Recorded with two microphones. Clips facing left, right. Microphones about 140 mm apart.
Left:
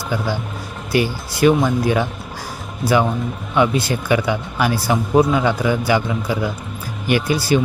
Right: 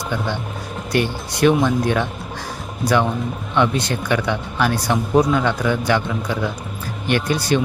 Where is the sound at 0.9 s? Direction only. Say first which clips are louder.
Left 2 dB; 5° left (ahead or behind).